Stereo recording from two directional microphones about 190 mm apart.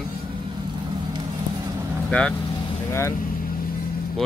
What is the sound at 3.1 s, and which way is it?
Vehicle, 50° left (ahead or behind).